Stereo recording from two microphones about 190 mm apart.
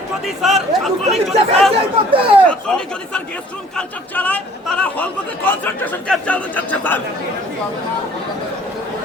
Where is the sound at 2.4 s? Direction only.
5° left (ahead or behind).